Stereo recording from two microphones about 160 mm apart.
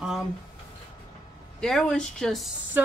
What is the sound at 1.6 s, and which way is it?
Speech, 5° left (ahead or behind).